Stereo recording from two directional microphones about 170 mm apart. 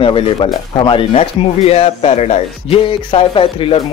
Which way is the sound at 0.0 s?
30° left (ahead or behind).